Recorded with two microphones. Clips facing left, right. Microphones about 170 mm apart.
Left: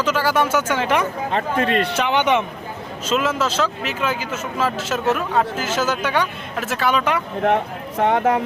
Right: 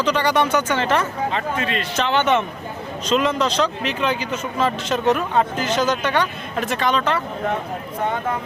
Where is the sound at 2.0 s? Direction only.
15° left (ahead or behind).